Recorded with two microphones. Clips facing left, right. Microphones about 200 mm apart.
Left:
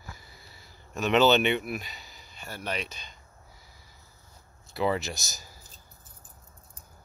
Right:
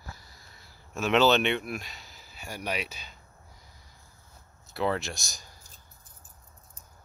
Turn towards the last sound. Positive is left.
turn(degrees=5)  # may be behind; listen again after turning